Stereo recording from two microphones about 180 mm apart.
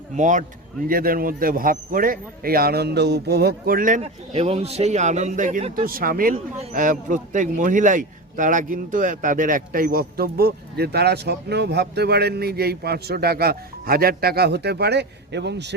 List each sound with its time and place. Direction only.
0.2 s a man's voice: 45° right (ahead or behind); by 15.7 s 70° right (ahead or behind)